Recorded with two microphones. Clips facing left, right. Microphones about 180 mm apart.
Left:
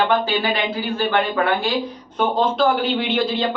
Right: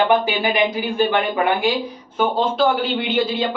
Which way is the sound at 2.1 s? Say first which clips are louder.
Even; 5° right (ahead or behind).